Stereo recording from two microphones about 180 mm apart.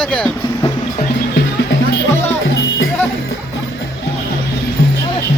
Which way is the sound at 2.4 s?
90° left.